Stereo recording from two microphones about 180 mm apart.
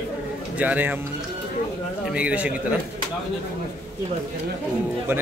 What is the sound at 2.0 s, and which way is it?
Speech, 5° right (ahead or behind).